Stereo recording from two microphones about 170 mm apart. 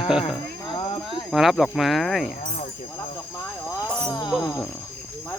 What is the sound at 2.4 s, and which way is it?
Snake, 45° left (ahead or behind).